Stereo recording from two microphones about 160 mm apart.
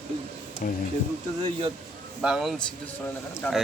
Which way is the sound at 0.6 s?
55° left (ahead or behind).